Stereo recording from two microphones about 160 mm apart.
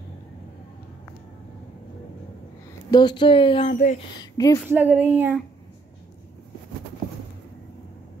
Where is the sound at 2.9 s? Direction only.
25° left (ahead or behind).